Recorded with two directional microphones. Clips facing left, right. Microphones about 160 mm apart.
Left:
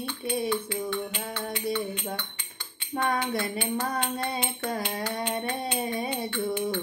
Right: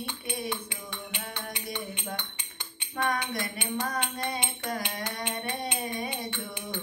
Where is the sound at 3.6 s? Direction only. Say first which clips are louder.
Left 3 dB; 20° right (ahead or behind).